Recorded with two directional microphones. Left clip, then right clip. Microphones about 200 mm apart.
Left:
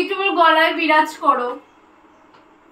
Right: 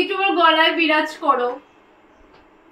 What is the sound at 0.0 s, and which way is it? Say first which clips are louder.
A woman's voice: left 1 dB; 20° left (ahead or behind).